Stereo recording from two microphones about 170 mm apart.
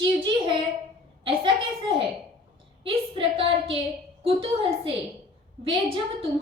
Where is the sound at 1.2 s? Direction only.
30° right (ahead or behind).